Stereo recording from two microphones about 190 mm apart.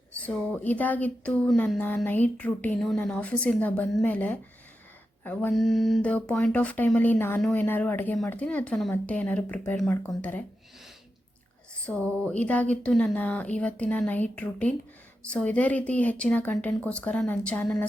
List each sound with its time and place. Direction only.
0.2 s speech: 5° left (ahead or behind)
11.9 s speech: 5° left (ahead or behind)